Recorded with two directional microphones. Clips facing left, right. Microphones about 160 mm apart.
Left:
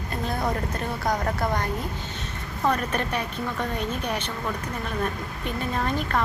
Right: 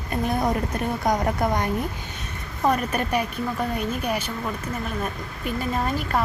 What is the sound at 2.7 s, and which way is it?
Speech, 10° right (ahead or behind).